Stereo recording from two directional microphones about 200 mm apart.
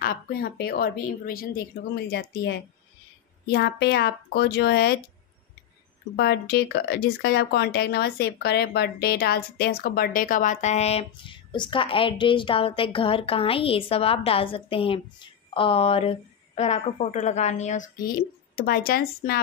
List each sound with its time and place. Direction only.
0.0 s a woman's voice: 50° left (ahead or behind)
6.1 s a woman's voice: 55° left (ahead or behind)